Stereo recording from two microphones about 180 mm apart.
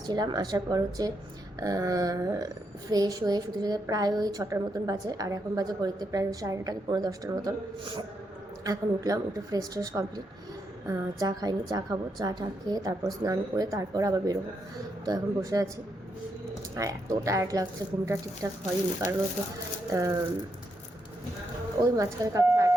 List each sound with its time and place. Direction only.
0.1 s a woman's voice: 20° right (ahead or behind)
16.7 s speech: 15° right (ahead or behind)
19.9 s speech: 20° right (ahead or behind)
21.8 s speech: 20° right (ahead or behind)